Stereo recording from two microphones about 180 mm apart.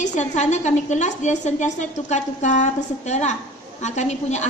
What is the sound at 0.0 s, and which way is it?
A woman's voice, 40° left (ahead or behind).